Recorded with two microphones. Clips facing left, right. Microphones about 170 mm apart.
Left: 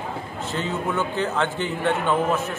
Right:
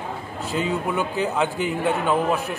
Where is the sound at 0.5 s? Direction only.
15° right (ahead or behind).